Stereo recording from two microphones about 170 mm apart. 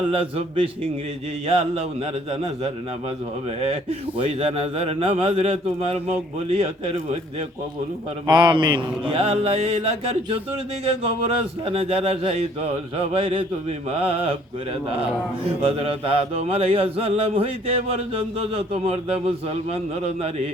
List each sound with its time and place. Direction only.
0.1 s speech: 30° right (ahead or behind)
3.6 s speech: 35° right (ahead or behind)
8.3 s speech: 25° right (ahead or behind)
11.6 s speech: 35° right (ahead or behind)
15.6 s speech: 35° right (ahead or behind)